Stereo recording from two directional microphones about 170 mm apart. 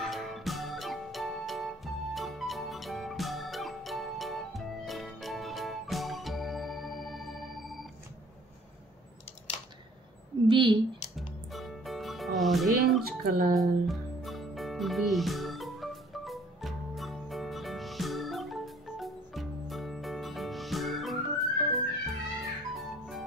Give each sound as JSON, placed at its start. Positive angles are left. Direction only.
{"t": 0.0, "sound": "music", "side_deg": 0}
{"t": 10.5, "sound": "a sound", "side_deg": -30}
{"t": 11.1, "sound": "music", "side_deg": 0}
{"t": 13.2, "sound": "speech", "side_deg": -55}
{"t": 13.6, "sound": "music", "side_deg": 0}